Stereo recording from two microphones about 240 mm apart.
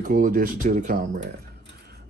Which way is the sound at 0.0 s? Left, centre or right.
Right.